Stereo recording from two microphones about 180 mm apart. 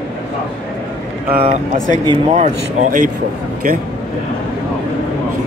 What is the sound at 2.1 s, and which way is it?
Speech, 40° right (ahead or behind).